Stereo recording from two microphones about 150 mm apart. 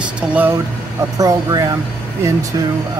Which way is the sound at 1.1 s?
25° right (ahead or behind).